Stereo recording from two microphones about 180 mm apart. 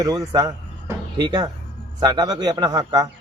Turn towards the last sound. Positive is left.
turn(degrees=-20)  # may be behind; listen again after turning